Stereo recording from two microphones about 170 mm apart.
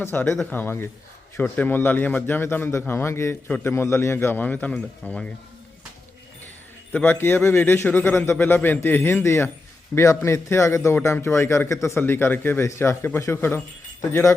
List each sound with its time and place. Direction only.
0.0 s a man's voice: 10° left (ahead or behind)
6.9 s a man's voice: 10° left (ahead or behind)